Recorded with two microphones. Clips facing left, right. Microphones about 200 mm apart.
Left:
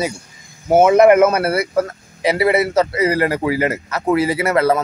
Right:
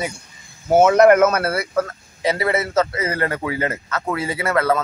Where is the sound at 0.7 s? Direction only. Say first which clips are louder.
Left 2 dB; 10° left (ahead or behind).